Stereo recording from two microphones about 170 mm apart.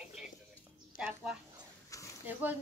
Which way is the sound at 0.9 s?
5° right (ahead or behind).